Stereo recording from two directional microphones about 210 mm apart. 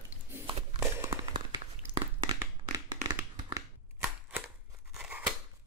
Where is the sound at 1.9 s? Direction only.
25° right (ahead or behind).